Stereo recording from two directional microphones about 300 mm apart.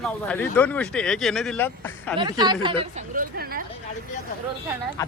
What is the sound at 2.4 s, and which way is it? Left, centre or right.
Speech, centre.